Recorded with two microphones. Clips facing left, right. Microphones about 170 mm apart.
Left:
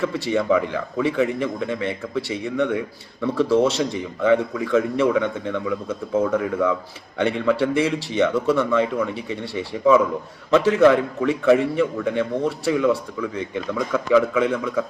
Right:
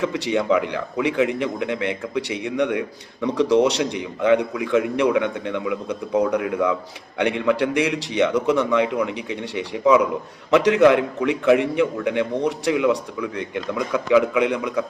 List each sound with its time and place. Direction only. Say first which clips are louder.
0.0 s a man's voice: even; 15° right (ahead or behind)